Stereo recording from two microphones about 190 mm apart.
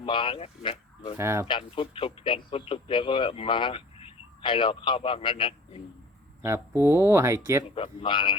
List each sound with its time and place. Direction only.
0.0 s speech: 25° left (ahead or behind)
1.2 s speech: 15° right (ahead or behind)
1.5 s speech: 25° left (ahead or behind)
6.4 s speech: 15° right (ahead or behind)
7.8 s speech: 25° left (ahead or behind)